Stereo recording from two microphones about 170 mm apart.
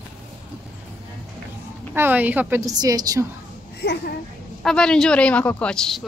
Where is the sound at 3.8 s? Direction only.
70° left (ahead or behind).